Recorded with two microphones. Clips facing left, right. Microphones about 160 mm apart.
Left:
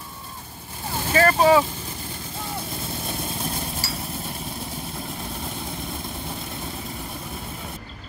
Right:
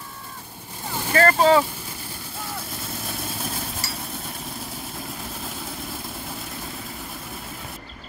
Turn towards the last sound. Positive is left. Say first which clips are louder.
# left 2 dB
turn(degrees=0)  # may be behind; listen again after turning